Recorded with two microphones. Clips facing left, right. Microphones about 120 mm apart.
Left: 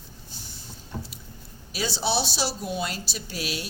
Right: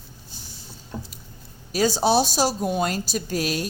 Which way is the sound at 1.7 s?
45° right (ahead or behind).